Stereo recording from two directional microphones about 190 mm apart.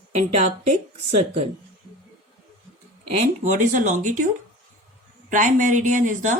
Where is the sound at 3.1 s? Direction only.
40° right (ahead or behind).